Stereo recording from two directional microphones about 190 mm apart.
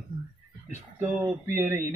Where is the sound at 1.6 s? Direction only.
15° right (ahead or behind).